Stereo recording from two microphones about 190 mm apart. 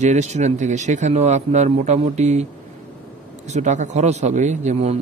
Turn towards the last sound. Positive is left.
turn(degrees=-35)  # may be behind; listen again after turning